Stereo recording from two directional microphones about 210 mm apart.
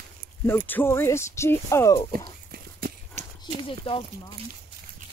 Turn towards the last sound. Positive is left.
turn(degrees=25)  # may be behind; listen again after turning